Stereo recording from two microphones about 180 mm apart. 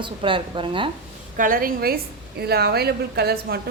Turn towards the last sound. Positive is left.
turn(degrees=-60)  # may be behind; listen again after turning